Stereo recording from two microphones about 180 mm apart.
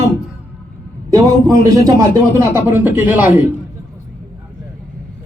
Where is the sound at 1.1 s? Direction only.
20° right (ahead or behind).